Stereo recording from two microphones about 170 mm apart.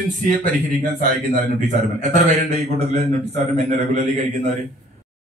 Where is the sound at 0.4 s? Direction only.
55° right (ahead or behind).